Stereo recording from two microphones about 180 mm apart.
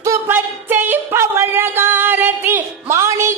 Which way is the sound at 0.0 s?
15° right (ahead or behind).